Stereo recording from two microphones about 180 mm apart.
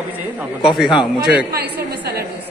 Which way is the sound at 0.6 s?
Centre (ahead or behind).